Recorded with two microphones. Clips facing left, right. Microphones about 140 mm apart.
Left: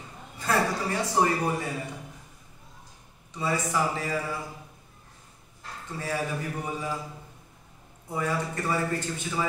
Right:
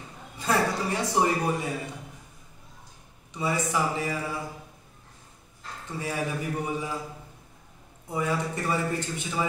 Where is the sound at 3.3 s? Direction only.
15° right (ahead or behind).